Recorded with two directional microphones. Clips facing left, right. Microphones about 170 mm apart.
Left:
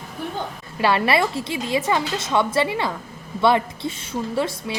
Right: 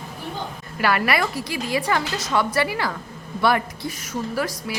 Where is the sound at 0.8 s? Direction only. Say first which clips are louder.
Left 2 dB; 25° left (ahead or behind).